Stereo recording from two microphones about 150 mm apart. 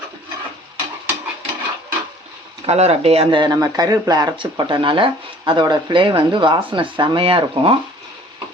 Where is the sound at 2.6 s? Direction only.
45° right (ahead or behind).